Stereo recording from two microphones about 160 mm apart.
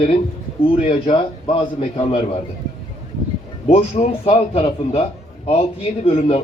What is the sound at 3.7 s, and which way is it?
Speech, 40° left (ahead or behind).